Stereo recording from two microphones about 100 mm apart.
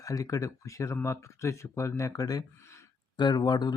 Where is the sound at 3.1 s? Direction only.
50° left (ahead or behind).